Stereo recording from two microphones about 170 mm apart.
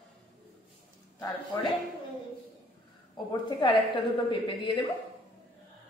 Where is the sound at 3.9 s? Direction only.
30° left (ahead or behind).